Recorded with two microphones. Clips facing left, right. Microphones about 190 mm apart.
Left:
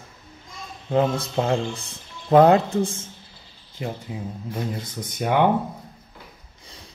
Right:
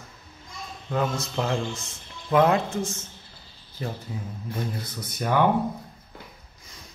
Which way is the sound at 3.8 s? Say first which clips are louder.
Left 2 dB; 15° left (ahead or behind).